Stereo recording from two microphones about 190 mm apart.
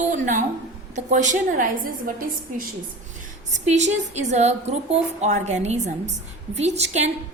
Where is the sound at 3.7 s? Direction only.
40° right (ahead or behind).